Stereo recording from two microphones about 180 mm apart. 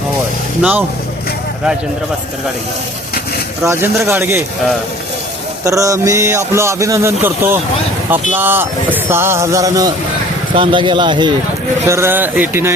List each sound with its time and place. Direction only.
0.6 s a man's voice: 10° right (ahead or behind)
3.6 s a man's voice: 15° right (ahead or behind)
5.6 s a man's voice: 15° right (ahead or behind)
11.9 s a man's voice: 15° right (ahead or behind)